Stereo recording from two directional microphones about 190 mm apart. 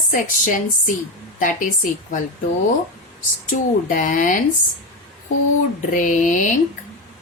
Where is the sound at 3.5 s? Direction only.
45° left (ahead or behind).